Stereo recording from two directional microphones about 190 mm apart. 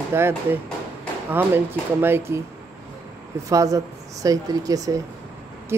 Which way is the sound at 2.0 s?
15° right (ahead or behind).